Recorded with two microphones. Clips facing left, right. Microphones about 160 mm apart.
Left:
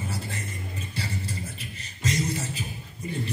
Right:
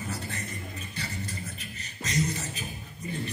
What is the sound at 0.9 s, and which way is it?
Beatboxing, 30° left (ahead or behind).